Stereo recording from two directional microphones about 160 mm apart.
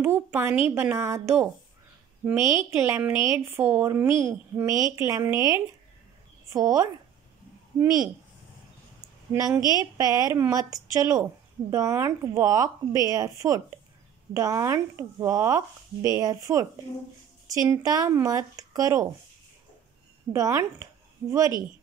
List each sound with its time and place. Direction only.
0.0 s a woman's voice: 15° right (ahead or behind)
9.3 s speech: 20° right (ahead or behind)
20.3 s speech: 20° right (ahead or behind)